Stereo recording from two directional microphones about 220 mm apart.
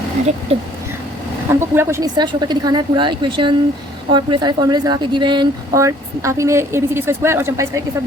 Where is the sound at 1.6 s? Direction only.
10° right (ahead or behind).